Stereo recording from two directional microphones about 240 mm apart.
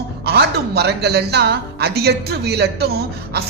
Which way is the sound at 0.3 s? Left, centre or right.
Right.